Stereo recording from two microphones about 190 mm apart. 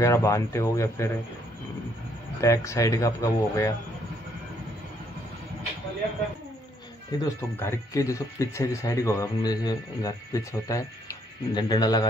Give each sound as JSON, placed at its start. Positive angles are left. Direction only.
{"t": 0.0, "sound": "speech", "side_deg": 15}
{"t": 2.4, "sound": "speech", "side_deg": 15}
{"t": 7.2, "sound": "speech", "side_deg": 15}